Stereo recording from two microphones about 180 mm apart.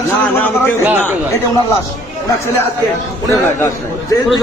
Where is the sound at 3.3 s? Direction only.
15° left (ahead or behind).